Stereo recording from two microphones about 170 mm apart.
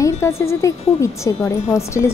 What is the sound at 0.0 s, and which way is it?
Speech, 15° left (ahead or behind).